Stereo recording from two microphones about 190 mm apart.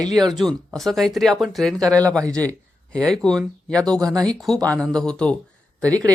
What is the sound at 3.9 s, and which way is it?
Speech, 20° right (ahead or behind).